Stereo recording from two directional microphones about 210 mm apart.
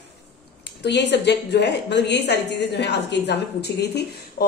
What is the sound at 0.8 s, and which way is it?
A woman's voice, 55° left (ahead or behind).